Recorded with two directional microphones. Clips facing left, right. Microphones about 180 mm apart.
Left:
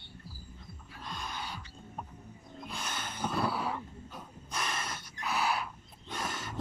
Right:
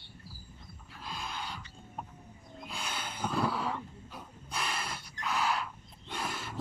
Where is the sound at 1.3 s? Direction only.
10° left (ahead or behind).